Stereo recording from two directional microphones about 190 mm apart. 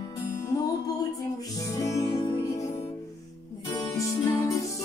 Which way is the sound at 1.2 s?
20° left (ahead or behind).